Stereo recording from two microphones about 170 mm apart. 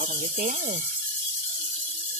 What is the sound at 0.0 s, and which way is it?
Speech, 50° right (ahead or behind).